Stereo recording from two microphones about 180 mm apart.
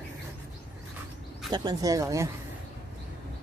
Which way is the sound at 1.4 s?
25° right (ahead or behind).